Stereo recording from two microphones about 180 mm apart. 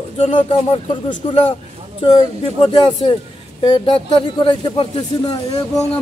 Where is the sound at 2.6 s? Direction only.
25° left (ahead or behind).